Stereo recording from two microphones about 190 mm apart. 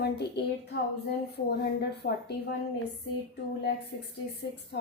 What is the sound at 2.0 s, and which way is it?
Speech, 50° left (ahead or behind).